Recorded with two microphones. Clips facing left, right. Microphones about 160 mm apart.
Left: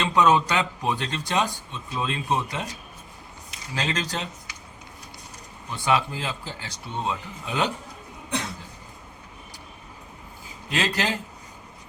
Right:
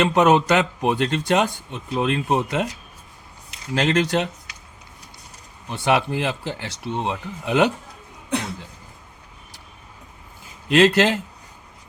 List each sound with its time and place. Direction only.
0.0 s a man's voice: 55° right (ahead or behind)
3.8 s speech: 70° right (ahead or behind)
5.8 s speech: 65° right (ahead or behind)
10.7 s speech: 75° right (ahead or behind)